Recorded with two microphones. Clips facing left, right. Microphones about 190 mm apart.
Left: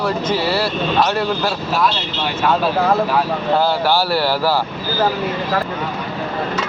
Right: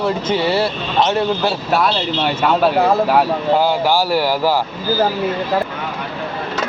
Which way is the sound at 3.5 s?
15° right (ahead or behind).